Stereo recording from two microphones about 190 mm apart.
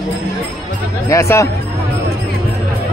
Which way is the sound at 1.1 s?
15° left (ahead or behind).